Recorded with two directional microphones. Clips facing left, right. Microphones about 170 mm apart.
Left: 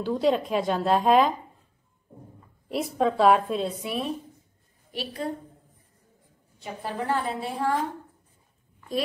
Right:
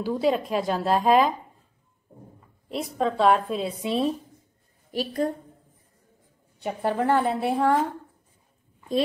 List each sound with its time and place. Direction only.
0.0 s speech: 5° right (ahead or behind)
2.7 s speech: centre (ahead or behind)
3.8 s a woman's voice: 25° right (ahead or behind)
4.9 s a woman's voice: 45° right (ahead or behind)
6.6 s a woman's voice: 60° right (ahead or behind)